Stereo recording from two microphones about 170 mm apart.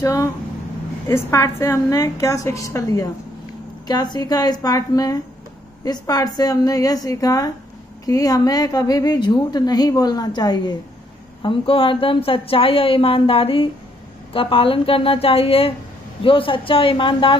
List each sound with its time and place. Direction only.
0.0 s a woman's voice: 20° left (ahead or behind)